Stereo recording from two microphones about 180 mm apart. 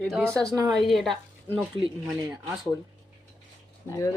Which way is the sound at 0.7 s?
Centre (ahead or behind).